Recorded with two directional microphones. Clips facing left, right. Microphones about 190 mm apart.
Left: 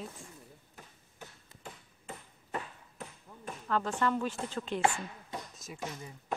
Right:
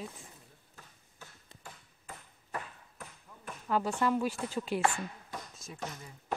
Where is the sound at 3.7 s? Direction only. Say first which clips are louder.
Right 1 dB; 10° right (ahead or behind).